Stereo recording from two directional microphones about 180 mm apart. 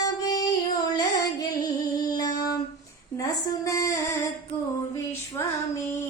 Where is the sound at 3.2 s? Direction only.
20° left (ahead or behind).